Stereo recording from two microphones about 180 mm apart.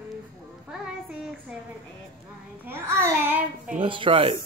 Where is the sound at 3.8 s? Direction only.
30° right (ahead or behind).